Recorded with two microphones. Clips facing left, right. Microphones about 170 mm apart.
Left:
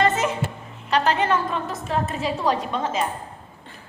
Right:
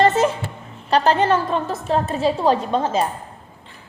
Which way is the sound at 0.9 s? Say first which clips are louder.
Right 4 dB; 35° right (ahead or behind).